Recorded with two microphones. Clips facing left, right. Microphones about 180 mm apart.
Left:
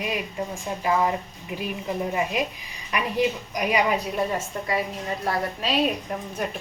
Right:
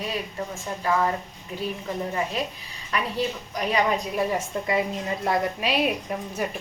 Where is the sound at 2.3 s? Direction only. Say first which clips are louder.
Left 2 dB; 15° left (ahead or behind).